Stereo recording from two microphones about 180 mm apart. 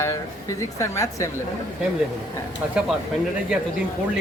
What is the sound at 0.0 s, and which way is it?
Speech, 15° left (ahead or behind).